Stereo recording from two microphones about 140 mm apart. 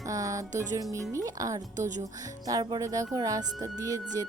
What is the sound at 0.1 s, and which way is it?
Music, 25° right (ahead or behind).